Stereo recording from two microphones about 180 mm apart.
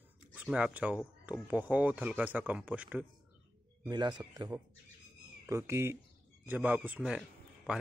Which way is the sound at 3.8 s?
25° right (ahead or behind).